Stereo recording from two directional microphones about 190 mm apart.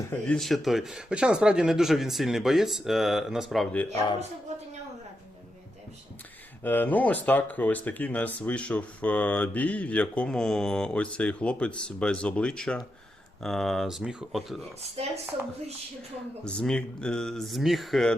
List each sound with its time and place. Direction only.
0.1 s speech: 5° left (ahead or behind)
6.6 s speech: 10° left (ahead or behind)
15.0 s speech: 30° right (ahead or behind)
16.4 s speech: 5° left (ahead or behind)